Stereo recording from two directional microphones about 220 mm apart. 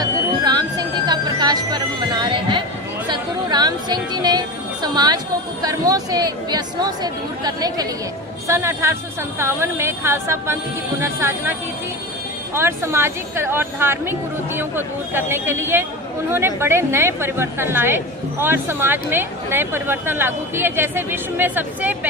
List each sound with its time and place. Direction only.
0.0 s music: 15° right (ahead or behind)
3.1 s a woman's voice: 20° right (ahead or behind)
12.5 s a woman's voice: 10° right (ahead or behind)